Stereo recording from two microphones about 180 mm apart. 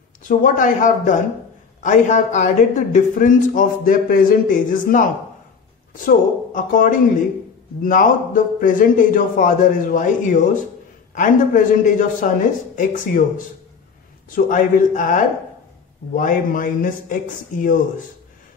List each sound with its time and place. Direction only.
0.2 s speech: 45° left (ahead or behind)
6.0 s speech: 50° left (ahead or behind)
14.3 s speech: 50° left (ahead or behind)